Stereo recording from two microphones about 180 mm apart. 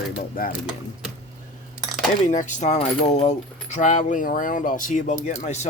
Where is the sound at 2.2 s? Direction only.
45° left (ahead or behind).